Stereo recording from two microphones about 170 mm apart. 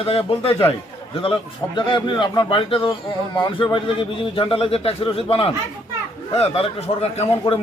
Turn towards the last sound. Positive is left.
turn(degrees=30)  # may be behind; listen again after turning